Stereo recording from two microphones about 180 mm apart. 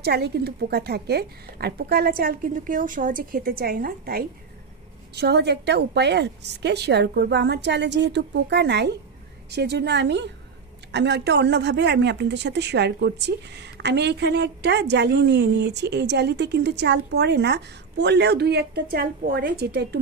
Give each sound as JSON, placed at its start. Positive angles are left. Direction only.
{"t": 0.0, "sound": "a woman's voice", "side_deg": -65}
{"t": 5.1, "sound": "speech", "side_deg": -65}